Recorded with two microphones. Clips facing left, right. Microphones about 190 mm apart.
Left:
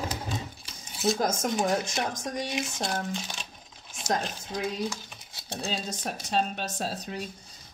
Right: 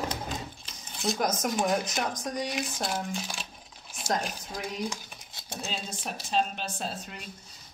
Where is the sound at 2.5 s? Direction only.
5° right (ahead or behind).